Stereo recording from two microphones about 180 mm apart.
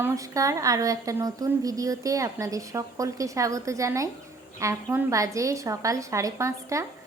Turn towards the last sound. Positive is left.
turn(degrees=-15)  # may be behind; listen again after turning